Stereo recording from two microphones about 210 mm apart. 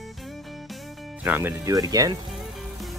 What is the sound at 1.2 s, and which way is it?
Speech, 10° right (ahead or behind).